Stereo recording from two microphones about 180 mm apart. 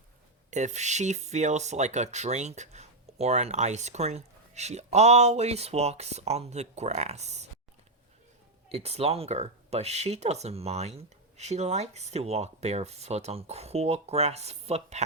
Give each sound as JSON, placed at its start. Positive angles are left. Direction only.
{"t": 0.5, "sound": "speech", "side_deg": -40}
{"t": 8.7, "sound": "speech", "side_deg": -35}